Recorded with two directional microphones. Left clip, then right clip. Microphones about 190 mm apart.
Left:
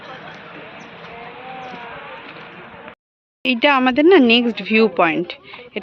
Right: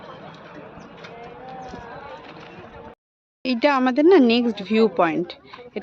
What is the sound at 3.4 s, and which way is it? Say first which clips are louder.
Speech: left 4 dB; centre (ahead or behind).